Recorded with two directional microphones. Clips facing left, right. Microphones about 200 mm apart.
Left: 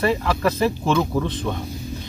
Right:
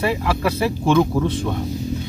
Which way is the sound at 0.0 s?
10° right (ahead or behind).